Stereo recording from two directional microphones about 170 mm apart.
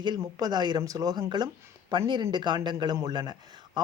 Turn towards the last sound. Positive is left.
turn(degrees=-25)  # may be behind; listen again after turning